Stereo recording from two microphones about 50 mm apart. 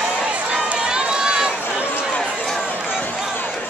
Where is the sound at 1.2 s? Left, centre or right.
Centre.